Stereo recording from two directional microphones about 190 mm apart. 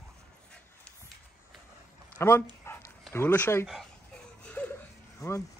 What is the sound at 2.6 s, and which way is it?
Dog, 15° left (ahead or behind).